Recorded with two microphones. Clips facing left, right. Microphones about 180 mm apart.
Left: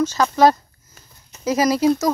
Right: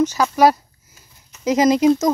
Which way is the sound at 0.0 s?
10° right (ahead or behind).